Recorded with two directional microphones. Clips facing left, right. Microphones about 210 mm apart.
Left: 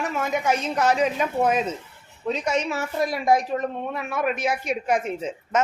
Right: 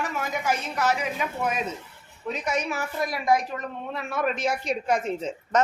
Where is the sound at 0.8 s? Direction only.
30° left (ahead or behind).